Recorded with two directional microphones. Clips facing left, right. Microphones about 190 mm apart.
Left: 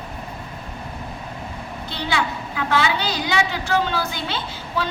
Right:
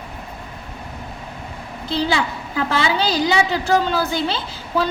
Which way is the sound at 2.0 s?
35° right (ahead or behind).